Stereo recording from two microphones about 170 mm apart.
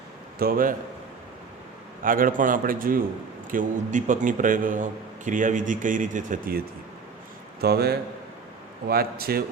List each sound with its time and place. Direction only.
0.3 s a man's voice: 60° right (ahead or behind)
2.0 s a man's voice: 55° right (ahead or behind)
7.6 s a man's voice: 70° right (ahead or behind)